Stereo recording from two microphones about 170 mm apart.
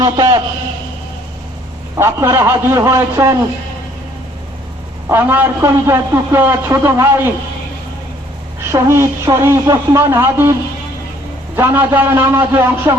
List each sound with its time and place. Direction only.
0.0 s a man's voice: 20° right (ahead or behind)
2.0 s a man's voice: 15° right (ahead or behind)
5.0 s a man's voice: 10° right (ahead or behind)
8.6 s a man's voice: 15° right (ahead or behind)
11.5 s a man's voice: 10° right (ahead or behind)